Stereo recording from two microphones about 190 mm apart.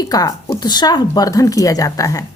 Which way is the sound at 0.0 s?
20° left (ahead or behind).